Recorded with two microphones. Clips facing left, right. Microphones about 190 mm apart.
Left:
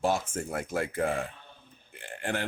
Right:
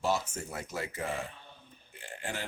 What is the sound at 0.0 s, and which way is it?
Speech, 50° left (ahead or behind).